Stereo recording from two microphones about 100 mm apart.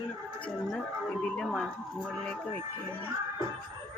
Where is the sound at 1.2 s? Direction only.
10° left (ahead or behind).